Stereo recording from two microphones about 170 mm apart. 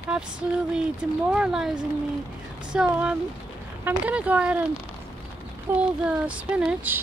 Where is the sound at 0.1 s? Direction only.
5° right (ahead or behind).